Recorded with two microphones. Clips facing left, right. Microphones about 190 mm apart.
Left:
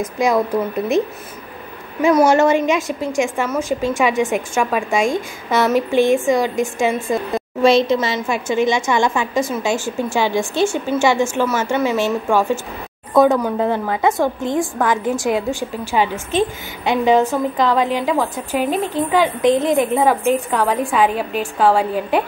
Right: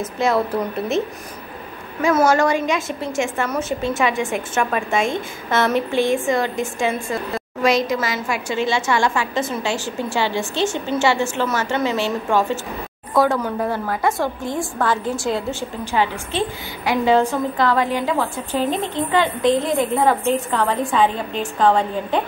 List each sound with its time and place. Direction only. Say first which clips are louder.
0.0 s a woman's voice: left 2 dB; 15° left (ahead or behind)
2.2 s a woman's voice: left 3 dB; 20° left (ahead or behind)
7.6 s a woman's voice: left 5 dB; 25° left (ahead or behind); by 22.2 s 10° left (ahead or behind)